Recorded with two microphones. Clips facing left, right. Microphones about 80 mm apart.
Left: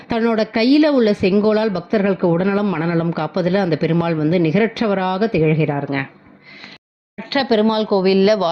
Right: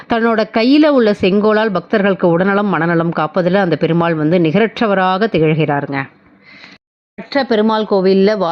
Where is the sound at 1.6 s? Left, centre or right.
Right.